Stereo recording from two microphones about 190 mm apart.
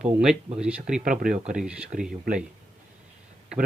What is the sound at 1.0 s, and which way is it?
Speech, 45° right (ahead or behind).